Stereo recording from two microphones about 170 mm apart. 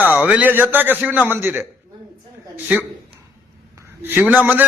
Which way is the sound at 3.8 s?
10° right (ahead or behind).